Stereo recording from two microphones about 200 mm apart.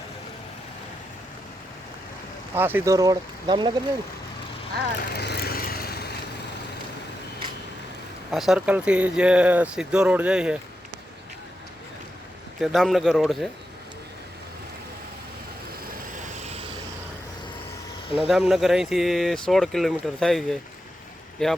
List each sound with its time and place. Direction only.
2.6 s speech: 10° right (ahead or behind)
4.9 s vehicle: 55° left (ahead or behind)
8.3 s speech: centre (ahead or behind)
12.5 s speech: centre (ahead or behind)
16.3 s vehicle: 35° right (ahead or behind)
18.3 s speech: centre (ahead or behind)